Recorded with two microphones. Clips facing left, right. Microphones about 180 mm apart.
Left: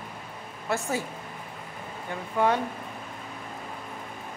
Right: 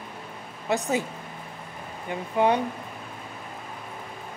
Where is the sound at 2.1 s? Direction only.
20° right (ahead or behind).